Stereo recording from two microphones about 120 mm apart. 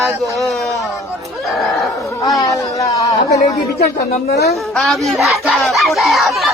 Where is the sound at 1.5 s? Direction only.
Centre (ahead or behind).